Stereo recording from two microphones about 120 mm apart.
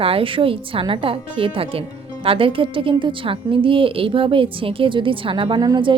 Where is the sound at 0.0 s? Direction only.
50° right (ahead or behind).